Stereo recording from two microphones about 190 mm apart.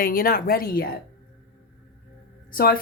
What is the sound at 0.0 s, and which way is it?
Speech, 50° left (ahead or behind).